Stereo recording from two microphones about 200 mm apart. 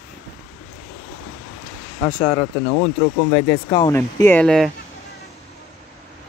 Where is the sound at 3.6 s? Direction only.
20° left (ahead or behind); by 4.7 s 5° left (ahead or behind).